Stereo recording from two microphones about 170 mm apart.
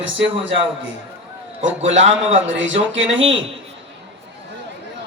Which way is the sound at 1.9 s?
40° right (ahead or behind).